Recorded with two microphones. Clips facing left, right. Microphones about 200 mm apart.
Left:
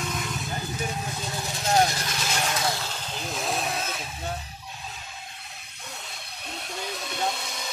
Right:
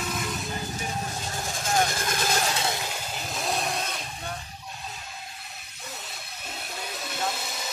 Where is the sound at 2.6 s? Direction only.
15° right (ahead or behind).